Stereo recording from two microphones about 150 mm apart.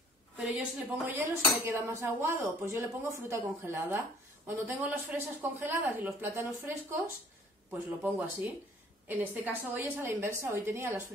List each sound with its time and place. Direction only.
0.4 s speech: 10° right (ahead or behind)